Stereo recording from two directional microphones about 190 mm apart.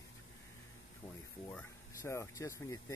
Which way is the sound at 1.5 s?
10° left (ahead or behind).